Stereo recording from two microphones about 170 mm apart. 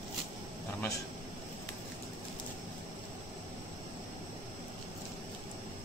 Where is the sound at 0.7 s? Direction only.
20° left (ahead or behind).